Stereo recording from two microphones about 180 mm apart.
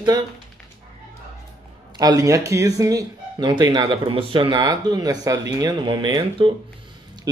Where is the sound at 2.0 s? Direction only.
20° right (ahead or behind).